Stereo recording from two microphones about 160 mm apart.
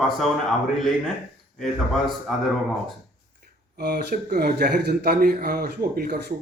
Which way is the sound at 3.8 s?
85° right.